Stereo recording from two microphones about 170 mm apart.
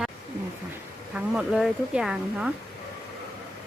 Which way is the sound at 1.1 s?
Centre (ahead or behind).